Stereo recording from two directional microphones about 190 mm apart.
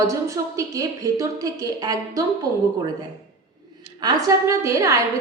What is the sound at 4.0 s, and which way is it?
A woman's voice, 20° right (ahead or behind).